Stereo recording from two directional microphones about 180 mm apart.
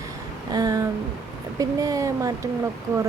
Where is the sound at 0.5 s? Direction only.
20° right (ahead or behind).